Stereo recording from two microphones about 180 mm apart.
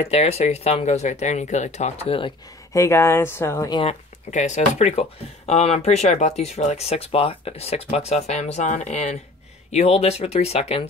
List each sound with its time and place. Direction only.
0.0 s speech: 35° left (ahead or behind)
2.7 s speech: 15° left (ahead or behind)
3.8 s speech: 40° left (ahead or behind)